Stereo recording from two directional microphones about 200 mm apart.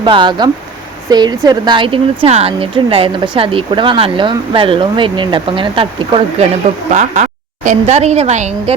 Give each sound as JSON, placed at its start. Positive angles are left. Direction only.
{"t": 0.0, "sound": "a woman's voice", "side_deg": -25}